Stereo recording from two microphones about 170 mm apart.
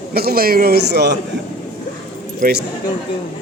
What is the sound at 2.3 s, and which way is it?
Speech, 60° right (ahead or behind).